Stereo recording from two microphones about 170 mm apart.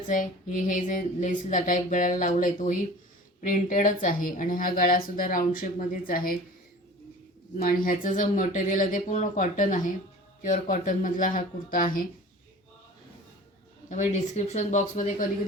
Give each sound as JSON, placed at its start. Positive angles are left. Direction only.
{"t": 0.1, "sound": "speech", "side_deg": 50}
{"t": 7.9, "sound": "speech", "side_deg": 50}
{"t": 13.9, "sound": "speech", "side_deg": 45}